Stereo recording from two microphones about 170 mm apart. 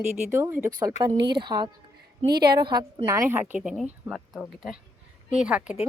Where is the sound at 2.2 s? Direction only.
70° right (ahead or behind).